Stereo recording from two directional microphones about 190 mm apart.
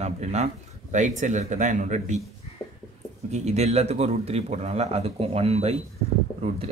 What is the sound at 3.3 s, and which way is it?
Speech, 35° right (ahead or behind).